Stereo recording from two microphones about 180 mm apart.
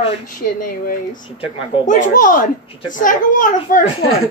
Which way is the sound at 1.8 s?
45° left (ahead or behind).